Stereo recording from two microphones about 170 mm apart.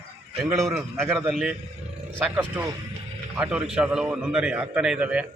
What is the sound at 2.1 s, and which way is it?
Speech, 5° left (ahead or behind).